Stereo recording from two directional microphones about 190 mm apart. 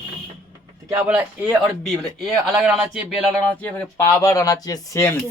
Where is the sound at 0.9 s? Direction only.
10° right (ahead or behind).